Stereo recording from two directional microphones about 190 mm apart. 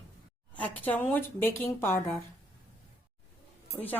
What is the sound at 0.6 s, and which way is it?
Speech, 10° left (ahead or behind).